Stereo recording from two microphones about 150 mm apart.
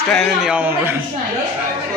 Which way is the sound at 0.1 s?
5° right (ahead or behind).